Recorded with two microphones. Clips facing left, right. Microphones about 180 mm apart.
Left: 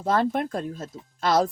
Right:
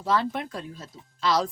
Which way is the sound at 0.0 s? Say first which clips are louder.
Left 3 dB; 50° left (ahead or behind).